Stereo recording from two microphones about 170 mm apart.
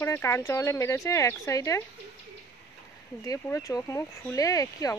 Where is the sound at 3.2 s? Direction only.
20° left (ahead or behind).